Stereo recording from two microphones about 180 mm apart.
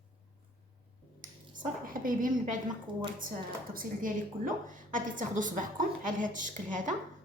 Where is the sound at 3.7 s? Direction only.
50° right (ahead or behind).